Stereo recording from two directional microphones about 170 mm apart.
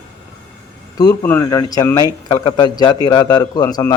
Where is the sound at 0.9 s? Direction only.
20° left (ahead or behind).